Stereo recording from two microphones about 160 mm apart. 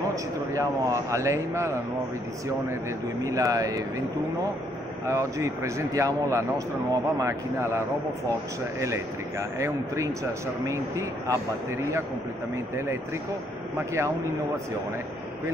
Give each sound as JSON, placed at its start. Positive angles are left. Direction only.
{"t": 0.1, "sound": "speech", "side_deg": -20}
{"t": 3.3, "sound": "speech", "side_deg": -20}
{"t": 5.0, "sound": "speech", "side_deg": -20}
{"t": 13.7, "sound": "speech", "side_deg": -20}